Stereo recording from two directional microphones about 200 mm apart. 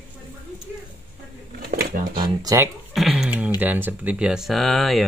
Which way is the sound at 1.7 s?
50° right (ahead or behind).